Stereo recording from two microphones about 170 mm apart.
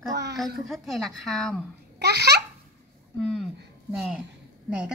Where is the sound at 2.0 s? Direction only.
75° right (ahead or behind).